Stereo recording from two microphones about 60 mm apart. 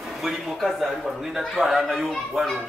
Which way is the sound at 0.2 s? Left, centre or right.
Centre.